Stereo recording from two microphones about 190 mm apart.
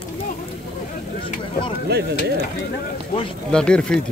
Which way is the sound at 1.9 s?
55° right (ahead or behind).